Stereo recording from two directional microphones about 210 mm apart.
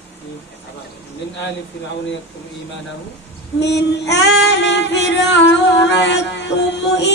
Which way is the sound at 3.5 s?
55° left (ahead or behind).